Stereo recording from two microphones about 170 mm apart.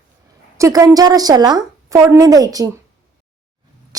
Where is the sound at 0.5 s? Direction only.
20° right (ahead or behind).